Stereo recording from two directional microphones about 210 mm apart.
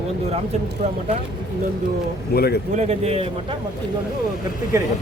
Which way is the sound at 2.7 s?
30° right (ahead or behind).